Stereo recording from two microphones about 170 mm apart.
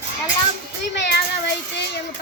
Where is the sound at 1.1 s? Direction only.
85° left.